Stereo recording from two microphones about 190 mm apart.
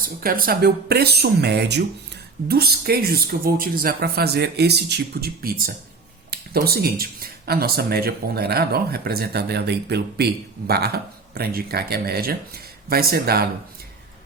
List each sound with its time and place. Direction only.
0.2 s speech: 50° right (ahead or behind)